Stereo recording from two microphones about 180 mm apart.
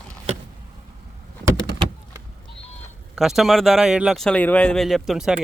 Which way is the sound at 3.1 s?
Centre (ahead or behind).